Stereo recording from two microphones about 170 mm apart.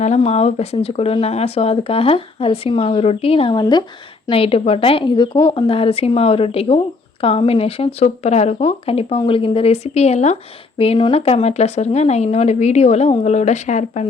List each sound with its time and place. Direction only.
0.0 s speech: 40° left (ahead or behind)